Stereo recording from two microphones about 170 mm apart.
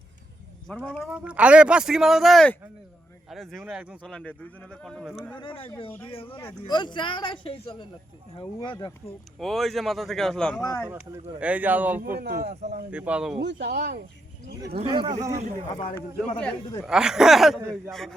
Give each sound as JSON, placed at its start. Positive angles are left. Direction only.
{"t": 0.9, "sound": "speech", "side_deg": 0}
{"t": 4.1, "sound": "speech", "side_deg": 5}
{"t": 5.3, "sound": "speech", "side_deg": 30}
{"t": 9.4, "sound": "speech", "side_deg": 0}
{"t": 10.6, "sound": "speech", "side_deg": 20}
{"t": 11.3, "sound": "speech", "side_deg": -10}
{"t": 12.2, "sound": "speech", "side_deg": -70}
{"t": 12.9, "sound": "speech", "side_deg": -10}
{"t": 13.4, "sound": "speech", "side_deg": -90}
{"t": 14.8, "sound": "speech", "side_deg": -30}
{"t": 15.7, "sound": "speech", "side_deg": 30}
{"t": 16.0, "sound": "speech", "side_deg": 5}
{"t": 16.8, "sound": "speech", "side_deg": -5}